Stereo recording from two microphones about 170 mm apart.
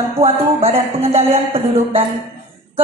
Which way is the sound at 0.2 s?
35° right (ahead or behind).